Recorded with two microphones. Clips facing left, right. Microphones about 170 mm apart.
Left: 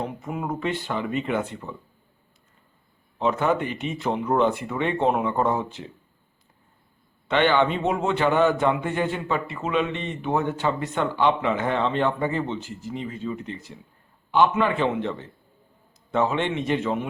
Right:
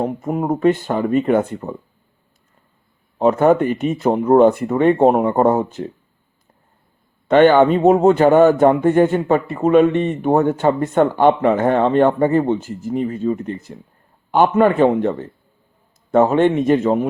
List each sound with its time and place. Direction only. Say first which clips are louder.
0.0 s a man's voice: right 9 dB; 45° right (ahead or behind)
3.2 s a man's voice: right 9 dB; 45° right (ahead or behind)
7.3 s a man's voice: right 10 dB; 45° right (ahead or behind)